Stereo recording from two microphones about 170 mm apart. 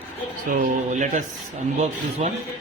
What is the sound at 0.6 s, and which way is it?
A man's voice, 45° right (ahead or behind).